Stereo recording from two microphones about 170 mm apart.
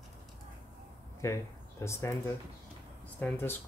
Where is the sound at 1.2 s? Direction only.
15° left (ahead or behind).